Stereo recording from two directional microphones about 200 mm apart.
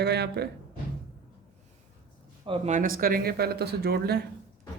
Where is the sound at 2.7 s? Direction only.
40° right (ahead or behind).